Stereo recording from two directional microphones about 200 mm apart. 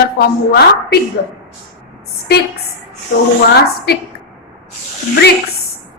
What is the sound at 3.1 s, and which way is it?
Speech, 55° left (ahead or behind).